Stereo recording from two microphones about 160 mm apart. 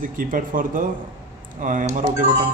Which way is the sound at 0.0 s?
60° right (ahead or behind).